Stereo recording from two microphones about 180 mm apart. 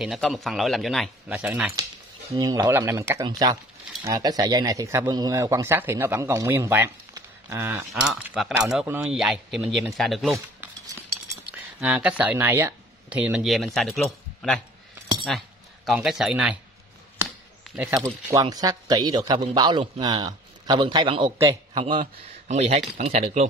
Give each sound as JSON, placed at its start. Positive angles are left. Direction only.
{"t": 0.0, "sound": "speech", "side_deg": 0}
{"t": 2.3, "sound": "speech", "side_deg": -20}
{"t": 7.9, "sound": "speech", "side_deg": 0}
{"t": 10.3, "sound": "cutlery", "side_deg": -15}
{"t": 11.8, "sound": "speech", "side_deg": -10}
{"t": 17.7, "sound": "speech", "side_deg": -20}
{"t": 22.0, "sound": "speech", "side_deg": -40}